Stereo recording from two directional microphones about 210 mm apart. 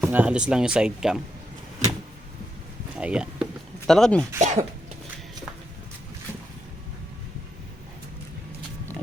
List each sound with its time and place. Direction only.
0.0 s speech: 10° right (ahead or behind)
3.0 s speech: 5° right (ahead or behind)
4.4 s speech: 35° right (ahead or behind)